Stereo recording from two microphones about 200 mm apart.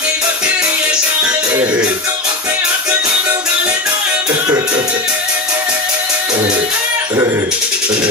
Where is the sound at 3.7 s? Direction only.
10° right (ahead or behind).